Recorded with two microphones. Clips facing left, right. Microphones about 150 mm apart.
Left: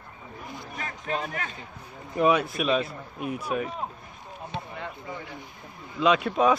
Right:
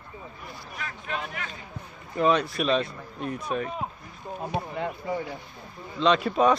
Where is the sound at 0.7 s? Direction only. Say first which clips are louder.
Left 3 dB; 40° left (ahead or behind).